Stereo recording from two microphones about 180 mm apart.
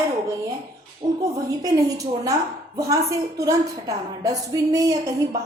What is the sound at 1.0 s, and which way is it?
A woman's voice, 20° right (ahead or behind).